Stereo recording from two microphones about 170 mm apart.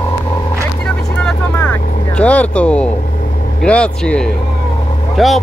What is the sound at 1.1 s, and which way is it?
Vehicle, 5° left (ahead or behind).